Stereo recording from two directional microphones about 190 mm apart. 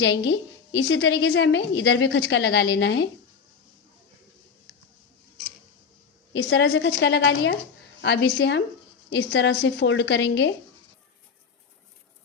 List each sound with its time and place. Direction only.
0.0 s a woman's voice: 70° left (ahead or behind)
6.3 s a woman's voice: 70° left (ahead or behind)